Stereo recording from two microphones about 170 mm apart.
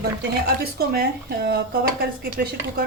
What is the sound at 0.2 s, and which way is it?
Speech, 65° right (ahead or behind).